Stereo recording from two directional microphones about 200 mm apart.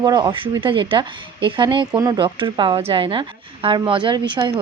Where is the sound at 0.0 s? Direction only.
20° right (ahead or behind).